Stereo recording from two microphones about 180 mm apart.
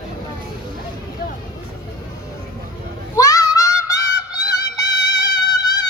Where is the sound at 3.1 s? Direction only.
20° left (ahead or behind).